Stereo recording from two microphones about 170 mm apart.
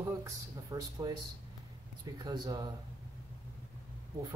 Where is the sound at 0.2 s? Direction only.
20° right (ahead or behind).